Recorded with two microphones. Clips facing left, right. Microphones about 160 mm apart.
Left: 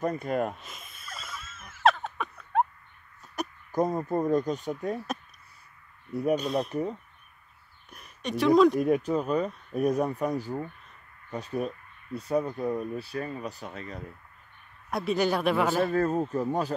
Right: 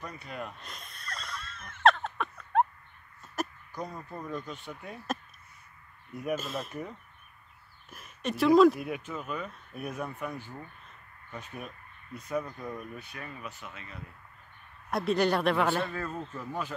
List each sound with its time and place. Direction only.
0.0 s speech: 50° left (ahead or behind)
0.6 s wheeze: 5° left (ahead or behind)
3.4 s a sound: centre (ahead or behind)
3.7 s speech: 45° left (ahead or behind)
6.3 s speech: centre (ahead or behind)
6.7 s speech: 35° left (ahead or behind)
7.9 s speech: centre (ahead or behind)
8.7 s speech: 40° left (ahead or behind)
14.9 s speech: centre (ahead or behind)
15.9 s speech: 40° left (ahead or behind)